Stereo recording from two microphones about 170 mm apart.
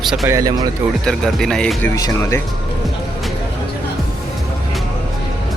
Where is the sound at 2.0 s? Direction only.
20° left (ahead or behind).